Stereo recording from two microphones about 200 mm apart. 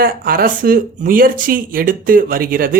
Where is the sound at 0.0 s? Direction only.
45° right (ahead or behind).